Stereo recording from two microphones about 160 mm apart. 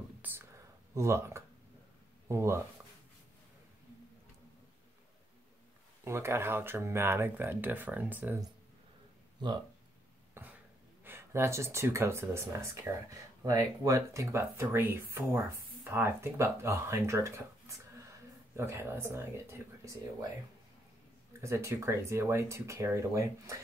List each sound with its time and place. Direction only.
0.2 s a sound: 10° right (ahead or behind)
0.9 s speech: 15° right (ahead or behind)
6.0 s speech: 15° right (ahead or behind)
10.4 s cough: 15° right (ahead or behind)
11.1 s speech: 15° right (ahead or behind)
21.3 s speech: 15° right (ahead or behind)